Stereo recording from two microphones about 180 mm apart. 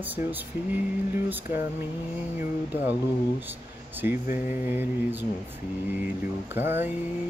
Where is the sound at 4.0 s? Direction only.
10° right (ahead or behind).